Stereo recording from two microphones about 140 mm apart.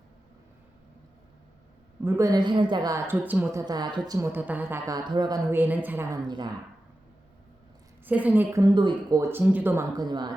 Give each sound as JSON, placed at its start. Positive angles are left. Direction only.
{"t": 2.0, "sound": "a woman's voice", "side_deg": -20}
{"t": 3.7, "sound": "a woman's voice", "side_deg": -30}
{"t": 4.3, "sound": "a woman's voice", "side_deg": -10}
{"t": 4.9, "sound": "a woman's voice", "side_deg": -30}
{"t": 5.5, "sound": "a woman's voice", "side_deg": -10}
{"t": 8.0, "sound": "a woman's voice", "side_deg": -10}
{"t": 8.6, "sound": "a woman's voice", "side_deg": -35}
{"t": 9.4, "sound": "a woman's voice", "side_deg": -10}
{"t": 9.9, "sound": "a woman's voice", "side_deg": -30}